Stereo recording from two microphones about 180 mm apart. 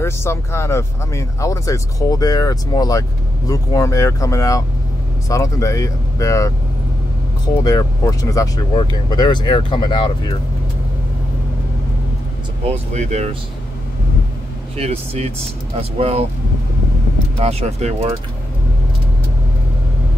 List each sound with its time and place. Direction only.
0.0 s speech: 15° left (ahead or behind)
7.6 s speech: 20° left (ahead or behind)
12.6 s speech: 35° right (ahead or behind)
14.8 s speech: 35° right (ahead or behind)
17.4 s speech: 35° right (ahead or behind)